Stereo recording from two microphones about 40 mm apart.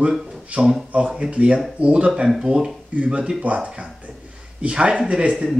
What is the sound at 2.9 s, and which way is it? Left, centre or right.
A man's voice, right.